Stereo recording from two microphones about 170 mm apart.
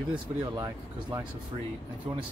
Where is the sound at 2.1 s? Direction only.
35° right (ahead or behind).